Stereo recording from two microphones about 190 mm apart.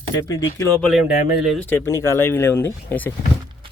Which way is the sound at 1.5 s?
10° left (ahead or behind).